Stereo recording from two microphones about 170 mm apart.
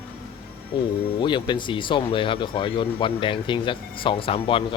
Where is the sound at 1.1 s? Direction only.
25° left (ahead or behind).